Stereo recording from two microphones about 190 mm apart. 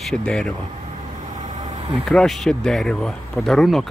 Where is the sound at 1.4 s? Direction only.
40° right (ahead or behind).